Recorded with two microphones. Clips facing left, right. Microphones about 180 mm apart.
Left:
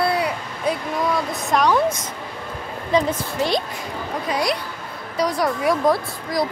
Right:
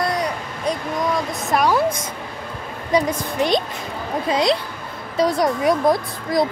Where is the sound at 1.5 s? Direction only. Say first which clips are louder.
Even; 10° right (ahead or behind).